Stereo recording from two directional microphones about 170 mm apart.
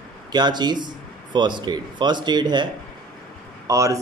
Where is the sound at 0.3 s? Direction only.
25° right (ahead or behind).